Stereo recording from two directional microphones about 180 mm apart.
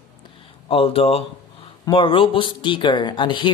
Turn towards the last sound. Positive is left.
turn(degrees=25)  # may be behind; listen again after turning